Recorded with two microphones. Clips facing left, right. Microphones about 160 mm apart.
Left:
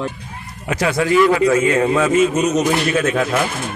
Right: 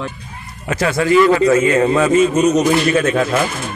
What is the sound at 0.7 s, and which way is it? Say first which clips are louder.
A man's voice: right 2 dB; 15° left (ahead or behind).